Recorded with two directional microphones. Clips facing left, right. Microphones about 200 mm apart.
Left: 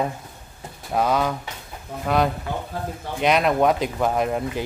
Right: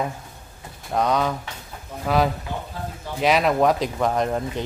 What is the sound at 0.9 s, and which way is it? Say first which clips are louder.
Speech: even; 5° left (ahead or behind).